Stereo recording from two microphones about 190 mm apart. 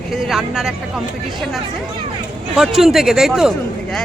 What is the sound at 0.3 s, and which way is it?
Speech, centre (ahead or behind).